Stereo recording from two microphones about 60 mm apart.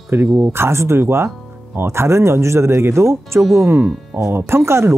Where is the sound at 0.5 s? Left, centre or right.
Right.